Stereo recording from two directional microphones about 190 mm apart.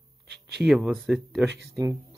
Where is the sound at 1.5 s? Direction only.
65° right (ahead or behind).